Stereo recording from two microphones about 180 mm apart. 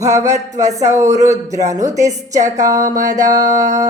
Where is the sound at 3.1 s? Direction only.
20° right (ahead or behind).